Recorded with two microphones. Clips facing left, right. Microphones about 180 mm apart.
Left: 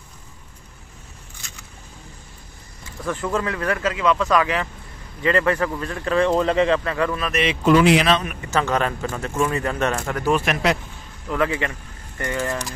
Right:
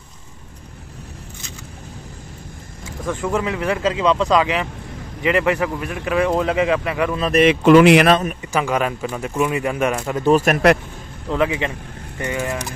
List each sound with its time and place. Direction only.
3.1 s speech: 15° right (ahead or behind)
7.6 s speech: 65° right (ahead or behind)
8.4 s speech: 10° right (ahead or behind)
10.3 s speech: 45° right (ahead or behind)
11.2 s speech: 20° right (ahead or behind)